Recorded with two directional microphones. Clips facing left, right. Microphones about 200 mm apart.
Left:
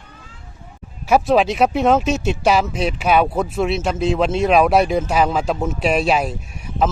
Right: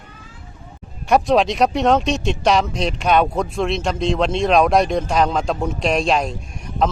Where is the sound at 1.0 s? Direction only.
5° left (ahead or behind).